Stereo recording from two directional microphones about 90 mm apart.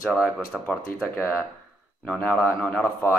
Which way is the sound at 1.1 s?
20° left (ahead or behind).